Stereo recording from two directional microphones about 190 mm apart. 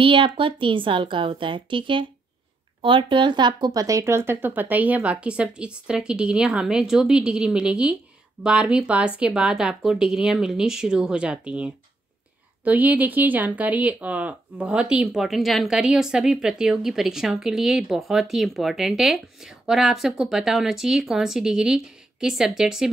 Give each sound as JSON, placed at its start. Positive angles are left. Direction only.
{"t": 0.0, "sound": "a woman's voice", "side_deg": -25}